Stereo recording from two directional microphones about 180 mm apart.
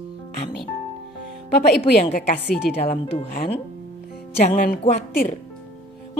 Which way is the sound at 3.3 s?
55° left (ahead or behind).